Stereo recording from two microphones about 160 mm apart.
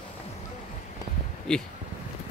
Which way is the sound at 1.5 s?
5° left (ahead or behind).